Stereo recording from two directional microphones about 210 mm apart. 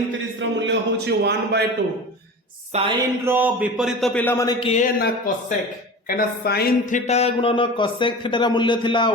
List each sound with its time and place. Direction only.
0.3 s a man's voice: 55° right (ahead or behind)
2.7 s a sound: 30° right (ahead or behind)
3.2 s a man's voice: 10° right (ahead or behind); by 4.5 s 10° left (ahead or behind)
4.6 s speech: 30° left (ahead or behind)
4.9 s speech: 45° left (ahead or behind)
7.0 s speech: 30° left (ahead or behind)